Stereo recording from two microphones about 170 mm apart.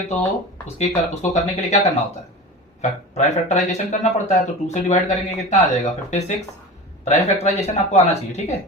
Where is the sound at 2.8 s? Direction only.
40° left (ahead or behind).